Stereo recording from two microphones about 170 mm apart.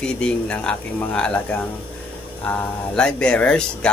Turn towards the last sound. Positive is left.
turn(degrees=5)  # may be behind; listen again after turning